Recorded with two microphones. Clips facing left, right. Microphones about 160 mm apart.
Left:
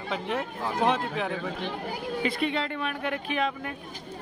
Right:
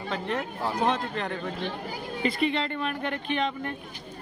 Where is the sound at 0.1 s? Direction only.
Centre (ahead or behind).